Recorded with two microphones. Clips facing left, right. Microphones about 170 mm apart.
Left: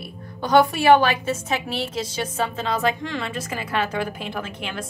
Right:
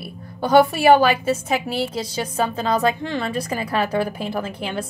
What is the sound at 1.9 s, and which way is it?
A woman's voice, 35° right (ahead or behind).